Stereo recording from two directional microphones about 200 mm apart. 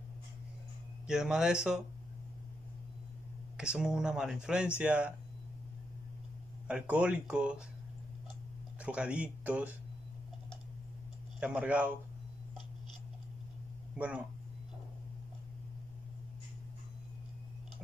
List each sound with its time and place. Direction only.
1.0 s speech: 5° right (ahead or behind)
3.5 s speech: 5° right (ahead or behind)
6.7 s speech: 5° right (ahead or behind)
8.8 s speech: 5° right (ahead or behind)
11.3 s speech: 5° right (ahead or behind)
13.9 s speech: 5° right (ahead or behind)